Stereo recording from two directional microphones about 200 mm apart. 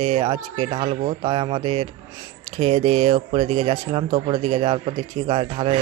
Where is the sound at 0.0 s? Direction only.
35° right (ahead or behind).